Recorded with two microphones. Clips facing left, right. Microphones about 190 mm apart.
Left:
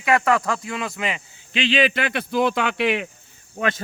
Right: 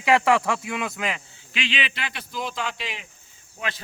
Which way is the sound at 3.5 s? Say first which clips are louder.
Left 9 dB; 45° left (ahead or behind).